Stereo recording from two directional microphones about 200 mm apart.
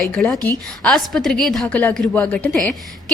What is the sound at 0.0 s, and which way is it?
A woman's voice, centre (ahead or behind).